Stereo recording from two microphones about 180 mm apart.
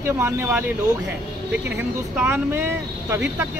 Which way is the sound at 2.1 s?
10° right (ahead or behind).